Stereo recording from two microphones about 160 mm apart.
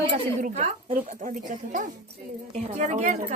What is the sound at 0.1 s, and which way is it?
Speech, 45° right (ahead or behind).